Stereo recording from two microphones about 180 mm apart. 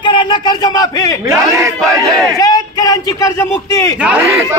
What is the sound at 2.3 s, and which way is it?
Speech, 20° left (ahead or behind).